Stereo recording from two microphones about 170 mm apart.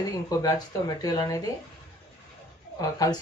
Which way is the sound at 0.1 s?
20° left (ahead or behind).